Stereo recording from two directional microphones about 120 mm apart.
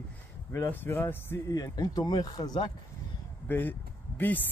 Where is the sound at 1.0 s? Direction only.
15° left (ahead or behind).